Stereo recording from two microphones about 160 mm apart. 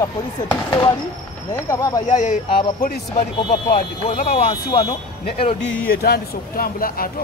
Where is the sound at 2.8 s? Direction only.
65° left (ahead or behind).